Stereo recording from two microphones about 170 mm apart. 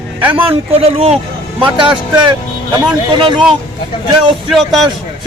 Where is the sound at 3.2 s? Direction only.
25° right (ahead or behind).